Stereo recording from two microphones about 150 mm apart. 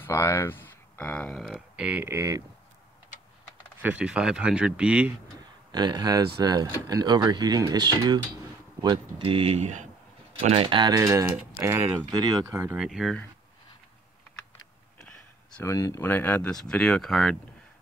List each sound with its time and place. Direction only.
0.0 s speech: 15° left (ahead or behind); by 2.4 s 20° right (ahead or behind)
3.8 s speech: 10° right (ahead or behind)
5.7 s speech: 30° right (ahead or behind); by 9.8 s 45° right (ahead or behind)
10.5 s speech: 35° right (ahead or behind)
11.0 s speech: 20° right (ahead or behind)
12.1 s speech: 25° right (ahead or behind)
12.7 s speech: centre (ahead or behind)
15.0 s a sound: 5° left (ahead or behind)
15.6 s speech: 20° left (ahead or behind); by 17.4 s centre (ahead or behind)